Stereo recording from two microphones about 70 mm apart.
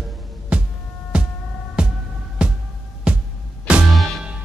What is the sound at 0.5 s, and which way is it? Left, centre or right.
Music, centre.